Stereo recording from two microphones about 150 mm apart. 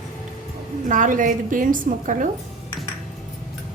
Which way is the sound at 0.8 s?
60° right (ahead or behind).